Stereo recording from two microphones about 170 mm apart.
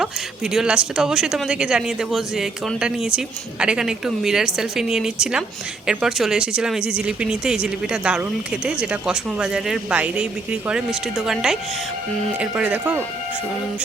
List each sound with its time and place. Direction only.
0.0 s speech: 5° right (ahead or behind)